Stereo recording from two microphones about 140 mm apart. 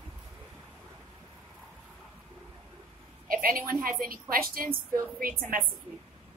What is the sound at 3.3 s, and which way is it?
A woman's voice, 90° right.